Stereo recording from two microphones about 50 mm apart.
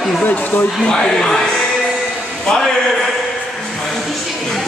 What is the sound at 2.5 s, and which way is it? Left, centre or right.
Speech, centre.